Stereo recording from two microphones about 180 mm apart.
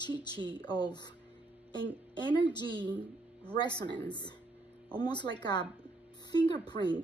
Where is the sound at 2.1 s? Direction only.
25° left (ahead or behind).